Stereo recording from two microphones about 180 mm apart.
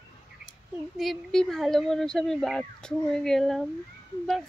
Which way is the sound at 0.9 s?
Centre (ahead or behind).